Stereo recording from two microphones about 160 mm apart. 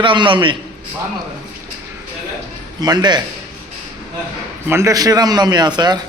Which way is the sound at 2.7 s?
25° right (ahead or behind).